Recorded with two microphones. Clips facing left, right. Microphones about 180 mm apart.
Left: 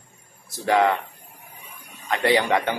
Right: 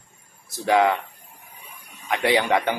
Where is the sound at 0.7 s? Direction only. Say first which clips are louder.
Right 1 dB; 15° right (ahead or behind).